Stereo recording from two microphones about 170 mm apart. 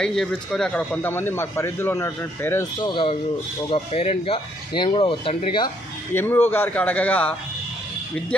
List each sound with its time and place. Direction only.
0.0 s speech: centre (ahead or behind)
2.8 s speech: 30° left (ahead or behind)
6.1 s speech: 10° left (ahead or behind)